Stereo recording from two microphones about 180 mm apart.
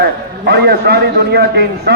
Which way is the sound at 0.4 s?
65° right (ahead or behind).